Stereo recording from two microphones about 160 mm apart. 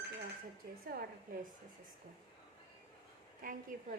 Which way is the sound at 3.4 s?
60° right (ahead or behind).